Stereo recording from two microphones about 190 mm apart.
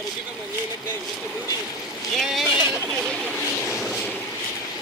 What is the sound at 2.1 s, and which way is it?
Speech, centre (ahead or behind).